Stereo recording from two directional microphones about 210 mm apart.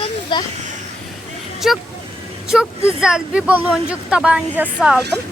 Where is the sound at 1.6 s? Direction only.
Centre (ahead or behind).